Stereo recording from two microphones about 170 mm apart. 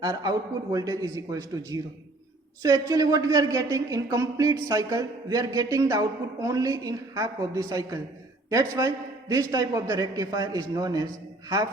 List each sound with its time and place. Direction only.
0.0 s speech: 20° right (ahead or behind)